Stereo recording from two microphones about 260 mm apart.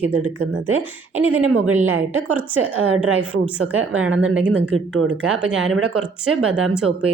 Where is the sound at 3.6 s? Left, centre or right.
Right.